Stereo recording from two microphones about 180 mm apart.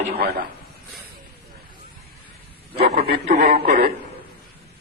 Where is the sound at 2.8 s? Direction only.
60° right (ahead or behind).